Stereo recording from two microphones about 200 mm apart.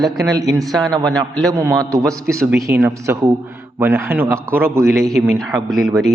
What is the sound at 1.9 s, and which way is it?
Speech, 5° left (ahead or behind).